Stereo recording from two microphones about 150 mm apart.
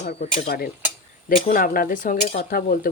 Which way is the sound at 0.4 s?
90° left.